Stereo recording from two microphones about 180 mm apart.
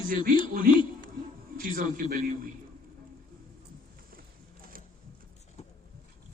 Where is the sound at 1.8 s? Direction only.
50° right (ahead or behind).